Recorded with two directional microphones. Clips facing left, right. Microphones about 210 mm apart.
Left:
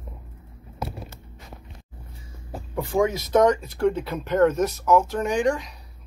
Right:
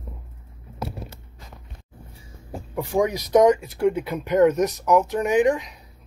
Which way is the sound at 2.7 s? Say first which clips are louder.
Even; 15° right (ahead or behind).